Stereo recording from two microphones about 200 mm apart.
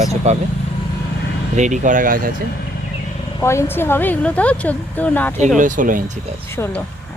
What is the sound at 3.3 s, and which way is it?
Speech, 15° left (ahead or behind).